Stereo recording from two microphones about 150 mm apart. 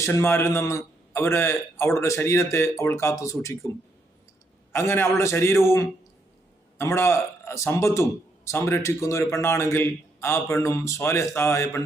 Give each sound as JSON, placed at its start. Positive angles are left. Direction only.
{"t": 0.0, "sound": "a man's voice", "side_deg": 15}
{"t": 4.7, "sound": "a man's voice", "side_deg": 15}